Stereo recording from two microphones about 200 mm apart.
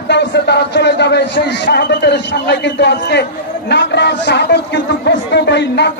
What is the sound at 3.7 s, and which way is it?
A man's voice, 60° left (ahead or behind).